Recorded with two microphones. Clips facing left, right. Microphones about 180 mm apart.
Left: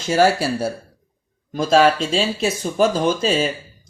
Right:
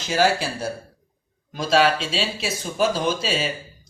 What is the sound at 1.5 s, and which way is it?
Speech, 45° left (ahead or behind).